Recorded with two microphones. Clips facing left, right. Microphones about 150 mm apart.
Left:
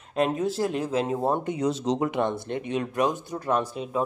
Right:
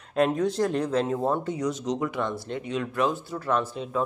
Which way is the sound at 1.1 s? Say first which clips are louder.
Left 1 dB; 15° left (ahead or behind).